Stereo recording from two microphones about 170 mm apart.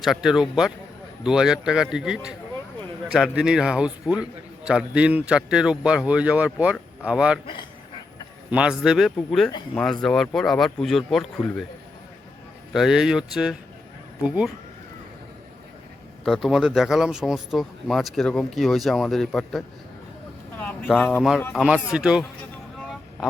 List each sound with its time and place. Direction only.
0.0 s a man's voice: centre (ahead or behind)
8.4 s a man's voice: 5° right (ahead or behind)
12.7 s a man's voice: centre (ahead or behind)
16.2 s a man's voice: centre (ahead or behind)
21.5 s a man's voice: 5° right (ahead or behind)